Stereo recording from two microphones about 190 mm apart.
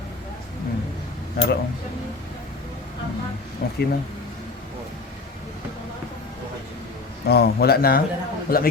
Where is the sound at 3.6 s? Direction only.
55° left (ahead or behind).